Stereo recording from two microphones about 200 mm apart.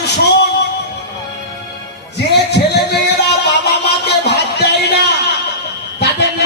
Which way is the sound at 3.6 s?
55° left (ahead or behind).